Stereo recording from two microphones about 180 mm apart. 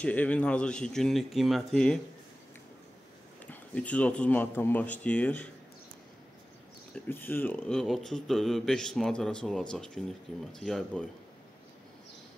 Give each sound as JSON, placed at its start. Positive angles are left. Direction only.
{"t": 0.0, "sound": "speech", "side_deg": 10}
{"t": 3.4, "sound": "speech", "side_deg": 5}
{"t": 7.1, "sound": "speech", "side_deg": 10}